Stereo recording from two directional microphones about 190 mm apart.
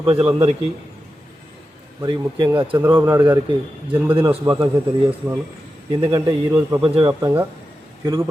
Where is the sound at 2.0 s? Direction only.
25° right (ahead or behind).